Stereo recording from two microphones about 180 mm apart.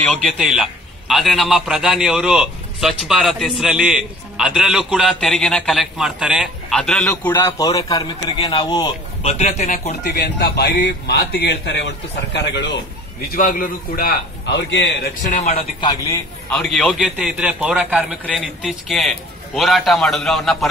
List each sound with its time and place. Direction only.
0.0 s a man's voice: centre (ahead or behind); by 8.9 s 25° left (ahead or behind)
9.2 s speech: 35° left (ahead or behind)
10.0 s a man's voice: 65° left (ahead or behind)
13.3 s a man's voice: 50° left (ahead or behind); by 15.0 s 80° left
15.2 s speech: 45° left (ahead or behind)
15.8 s a man's voice: 25° left (ahead or behind)
16.4 s a man's voice: centre (ahead or behind)